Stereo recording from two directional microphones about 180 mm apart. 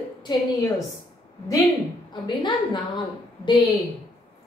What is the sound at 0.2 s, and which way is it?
Speech, 20° left (ahead or behind).